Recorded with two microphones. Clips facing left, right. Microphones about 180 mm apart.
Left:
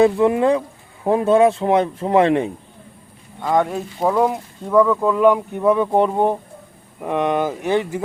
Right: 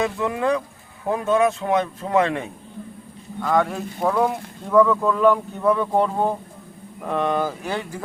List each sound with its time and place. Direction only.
0.0 s speech: 30° left (ahead or behind)
3.4 s speech: 10° left (ahead or behind)